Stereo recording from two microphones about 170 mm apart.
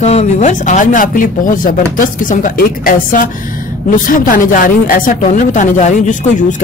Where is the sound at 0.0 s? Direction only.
40° left (ahead or behind).